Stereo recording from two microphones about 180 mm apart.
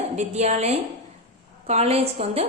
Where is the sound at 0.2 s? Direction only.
40° right (ahead or behind).